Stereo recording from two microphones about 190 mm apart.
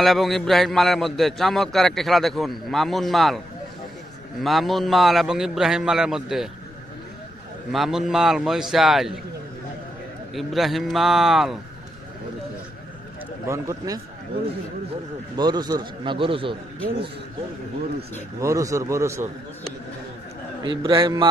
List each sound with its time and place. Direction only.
0.0 s a man's voice: centre (ahead or behind)
7.7 s a man's voice: centre (ahead or behind)
10.3 s a man's voice: centre (ahead or behind)
13.5 s a man's voice: 20° right (ahead or behind)
15.3 s a man's voice: 20° right (ahead or behind)
18.4 s speech: 15° right (ahead or behind)
20.8 s a man's voice: 25° right (ahead or behind)